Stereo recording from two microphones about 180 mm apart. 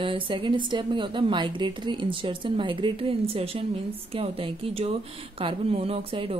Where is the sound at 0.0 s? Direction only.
30° right (ahead or behind).